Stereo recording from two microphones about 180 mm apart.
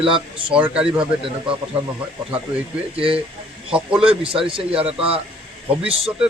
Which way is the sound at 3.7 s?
5° right (ahead or behind).